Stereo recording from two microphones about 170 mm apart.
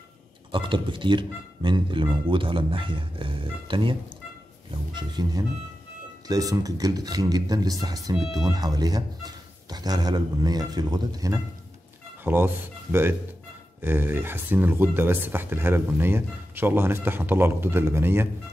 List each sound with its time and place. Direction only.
0.5 s speech: 30° right (ahead or behind)
4.9 s speech: 25° right (ahead or behind)
13.7 s speech: 15° right (ahead or behind)